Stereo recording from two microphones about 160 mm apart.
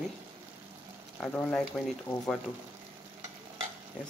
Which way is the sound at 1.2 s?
10° left (ahead or behind).